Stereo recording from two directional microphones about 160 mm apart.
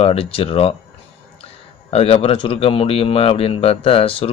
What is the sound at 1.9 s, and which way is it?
Speech, 40° left (ahead or behind).